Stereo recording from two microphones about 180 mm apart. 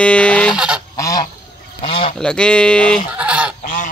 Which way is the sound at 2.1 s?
5° left (ahead or behind).